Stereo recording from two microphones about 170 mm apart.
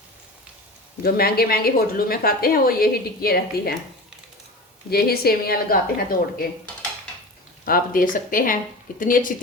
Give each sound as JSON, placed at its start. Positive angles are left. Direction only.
{"t": 1.0, "sound": "a woman's voice", "side_deg": 65}
{"t": 4.9, "sound": "a woman's voice", "side_deg": 65}
{"t": 7.6, "sound": "a woman's voice", "side_deg": 55}